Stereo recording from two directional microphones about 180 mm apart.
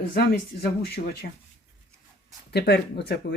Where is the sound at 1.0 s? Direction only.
45° left (ahead or behind).